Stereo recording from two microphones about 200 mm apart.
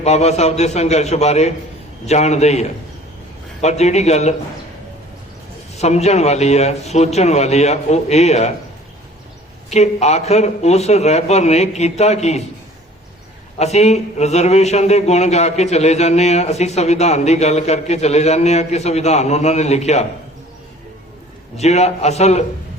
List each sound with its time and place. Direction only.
0.0 s a man's voice: 35° left (ahead or behind)
5.7 s a man's voice: 35° left (ahead or behind)
9.6 s a man's voice: 35° left (ahead or behind)
13.6 s a man's voice: 35° left (ahead or behind)
21.6 s a man's voice: 35° left (ahead or behind)